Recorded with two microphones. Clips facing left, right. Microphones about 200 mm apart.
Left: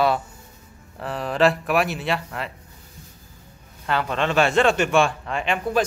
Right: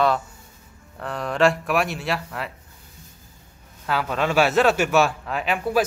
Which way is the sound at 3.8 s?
5° right (ahead or behind).